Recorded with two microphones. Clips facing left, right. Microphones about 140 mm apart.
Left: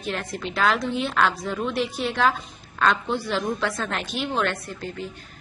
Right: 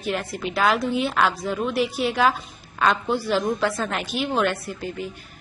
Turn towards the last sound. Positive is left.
turn(degrees=-10)  # may be behind; listen again after turning